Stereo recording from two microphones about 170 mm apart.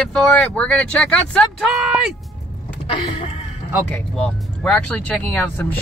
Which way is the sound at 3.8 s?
10° left (ahead or behind).